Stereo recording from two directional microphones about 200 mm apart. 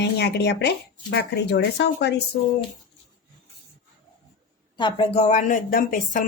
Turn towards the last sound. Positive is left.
turn(degrees=40)  # may be behind; listen again after turning